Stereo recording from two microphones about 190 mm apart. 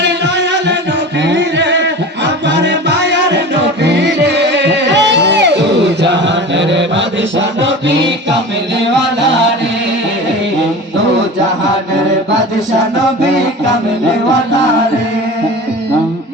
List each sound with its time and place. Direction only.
0.0 s music: 65° right (ahead or behind)